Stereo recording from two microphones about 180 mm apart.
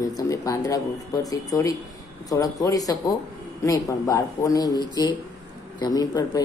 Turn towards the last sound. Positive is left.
turn(degrees=20)  # may be behind; listen again after turning